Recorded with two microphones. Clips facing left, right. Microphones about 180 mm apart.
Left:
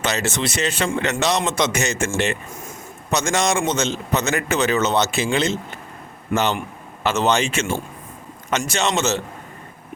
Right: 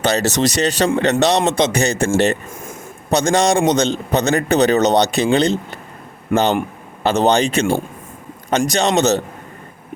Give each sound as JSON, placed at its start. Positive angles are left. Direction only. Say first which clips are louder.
{"t": 0.0, "sound": "a man's voice", "louder": "right 6 dB", "side_deg": -35}
{"t": 7.0, "sound": "a man's voice", "louder": "right 5 dB", "side_deg": -35}